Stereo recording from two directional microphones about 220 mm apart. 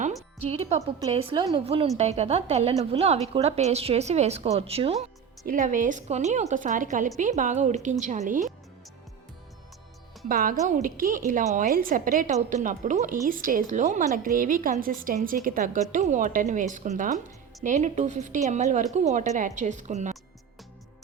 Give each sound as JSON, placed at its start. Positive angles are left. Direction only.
{"t": 0.4, "sound": "a woman's voice", "side_deg": -30}
{"t": 10.2, "sound": "a woman's voice", "side_deg": -40}